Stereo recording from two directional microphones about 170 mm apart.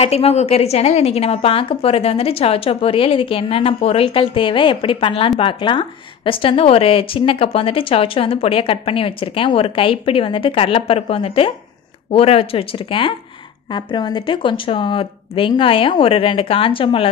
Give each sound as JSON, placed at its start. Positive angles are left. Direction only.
{"t": 0.0, "sound": "speech", "side_deg": 40}